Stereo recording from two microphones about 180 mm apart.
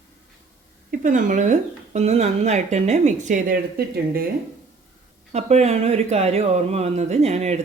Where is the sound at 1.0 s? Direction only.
45° right (ahead or behind).